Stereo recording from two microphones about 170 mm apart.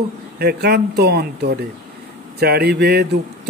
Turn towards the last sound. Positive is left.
turn(degrees=-75)  # may be behind; listen again after turning